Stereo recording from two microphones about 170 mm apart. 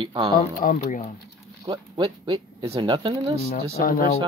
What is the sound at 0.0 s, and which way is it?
Speech, 25° right (ahead or behind).